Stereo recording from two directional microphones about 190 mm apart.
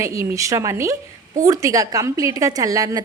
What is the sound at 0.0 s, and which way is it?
A woman's voice, 15° right (ahead or behind).